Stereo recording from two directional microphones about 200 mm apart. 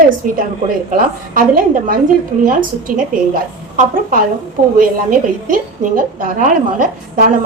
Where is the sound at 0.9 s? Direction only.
40° right (ahead or behind).